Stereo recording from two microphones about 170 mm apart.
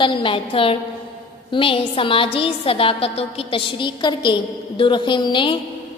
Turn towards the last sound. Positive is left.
turn(degrees=30)  # may be behind; listen again after turning